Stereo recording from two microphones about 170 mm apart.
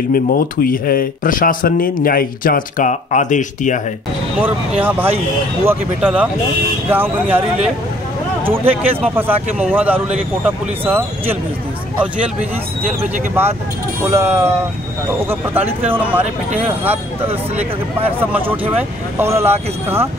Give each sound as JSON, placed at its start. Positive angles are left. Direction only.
{"t": 0.1, "sound": "speech", "side_deg": 60}
{"t": 4.4, "sound": "speech", "side_deg": -10}
{"t": 9.0, "sound": "speech", "side_deg": -10}
{"t": 14.0, "sound": "speech", "side_deg": -15}